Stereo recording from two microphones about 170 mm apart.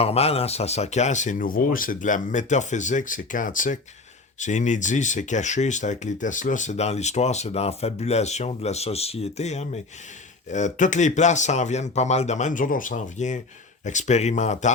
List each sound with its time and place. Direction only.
0.0 s speech: 35° left (ahead or behind)